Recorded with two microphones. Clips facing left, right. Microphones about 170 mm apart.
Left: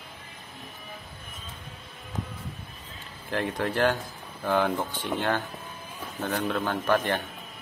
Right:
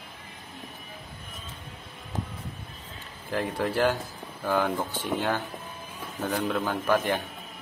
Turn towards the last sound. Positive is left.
turn(degrees=-10)  # may be behind; listen again after turning